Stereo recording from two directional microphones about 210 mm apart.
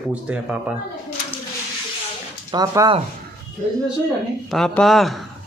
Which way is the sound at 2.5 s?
20° right (ahead or behind).